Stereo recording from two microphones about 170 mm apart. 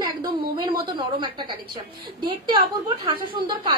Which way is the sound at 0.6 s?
25° right (ahead or behind).